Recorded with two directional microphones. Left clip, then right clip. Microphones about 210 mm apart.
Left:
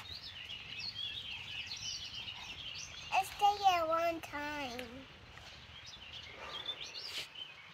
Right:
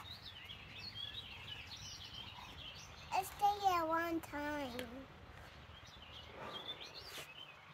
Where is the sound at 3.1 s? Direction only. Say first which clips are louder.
Left 4 dB; 20° left (ahead or behind).